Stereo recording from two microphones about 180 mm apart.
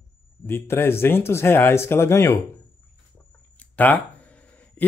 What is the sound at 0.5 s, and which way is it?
Speech, 15° left (ahead or behind).